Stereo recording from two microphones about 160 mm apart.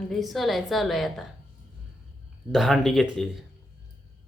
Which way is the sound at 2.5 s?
Centre (ahead or behind).